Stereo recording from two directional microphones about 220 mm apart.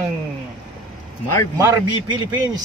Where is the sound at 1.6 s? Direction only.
15° right (ahead or behind).